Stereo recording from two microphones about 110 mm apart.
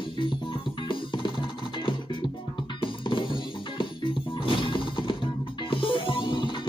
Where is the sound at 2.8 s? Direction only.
50° left (ahead or behind).